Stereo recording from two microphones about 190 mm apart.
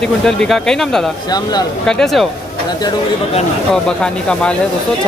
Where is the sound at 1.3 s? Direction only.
20° left (ahead or behind).